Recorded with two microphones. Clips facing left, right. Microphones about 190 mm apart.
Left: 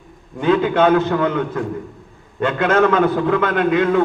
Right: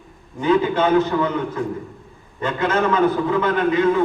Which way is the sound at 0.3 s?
65° left (ahead or behind).